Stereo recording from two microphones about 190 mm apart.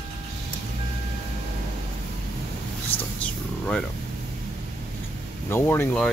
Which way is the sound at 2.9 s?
30° left (ahead or behind).